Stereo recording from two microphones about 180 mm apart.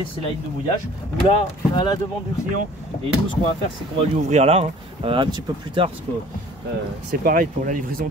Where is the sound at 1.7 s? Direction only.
25° left (ahead or behind).